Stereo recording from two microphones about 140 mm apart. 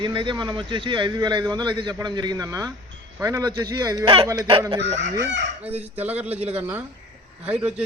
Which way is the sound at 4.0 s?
40° right (ahead or behind).